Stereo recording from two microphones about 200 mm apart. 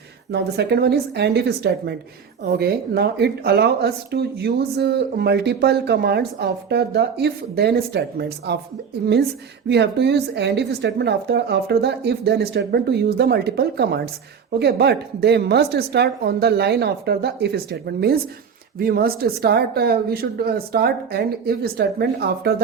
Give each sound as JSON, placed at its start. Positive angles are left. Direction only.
{"t": 0.3, "sound": "speech", "side_deg": -55}
{"t": 9.6, "sound": "a woman's voice", "side_deg": -60}